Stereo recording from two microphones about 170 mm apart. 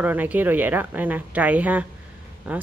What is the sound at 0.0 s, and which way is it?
Speech, 10° right (ahead or behind).